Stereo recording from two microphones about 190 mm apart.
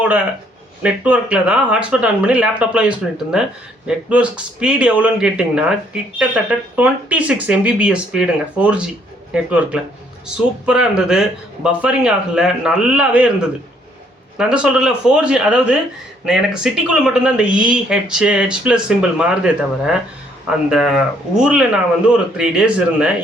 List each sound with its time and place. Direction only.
0.8 s a man's voice: 5° right (ahead or behind)
14.3 s a man's voice: 5° right (ahead or behind)